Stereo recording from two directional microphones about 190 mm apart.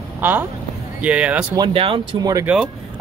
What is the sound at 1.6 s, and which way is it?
Speech, 30° right (ahead or behind).